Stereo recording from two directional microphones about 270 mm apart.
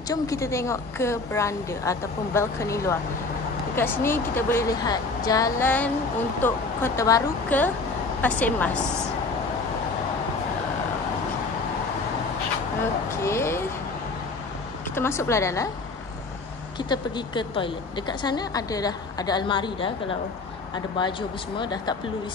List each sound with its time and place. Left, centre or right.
0.1 s a woman's voice: centre
13.1 s a sound: centre
15.0 s a woman's voice: centre
16.7 s a woman's voice: centre